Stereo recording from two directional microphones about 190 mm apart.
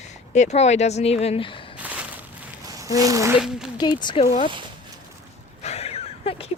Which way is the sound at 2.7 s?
20° right (ahead or behind).